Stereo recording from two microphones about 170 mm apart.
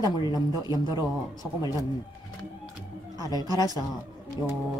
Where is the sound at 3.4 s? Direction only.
20° right (ahead or behind).